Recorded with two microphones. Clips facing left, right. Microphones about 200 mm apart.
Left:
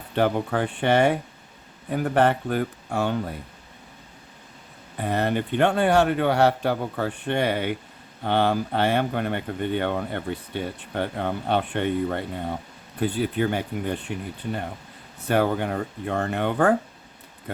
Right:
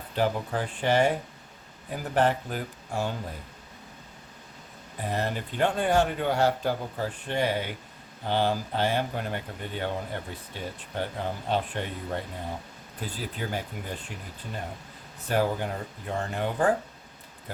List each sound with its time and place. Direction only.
0.2 s speech: 65° left (ahead or behind)
4.9 s speech: 65° left (ahead or behind)